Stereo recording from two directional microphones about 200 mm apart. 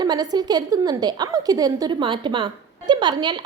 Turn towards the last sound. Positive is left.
turn(degrees=-20)  # may be behind; listen again after turning